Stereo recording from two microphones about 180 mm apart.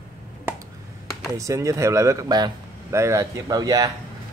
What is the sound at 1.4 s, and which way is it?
Speech, 15° right (ahead or behind).